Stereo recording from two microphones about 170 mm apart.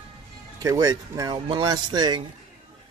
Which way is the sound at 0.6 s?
20° right (ahead or behind).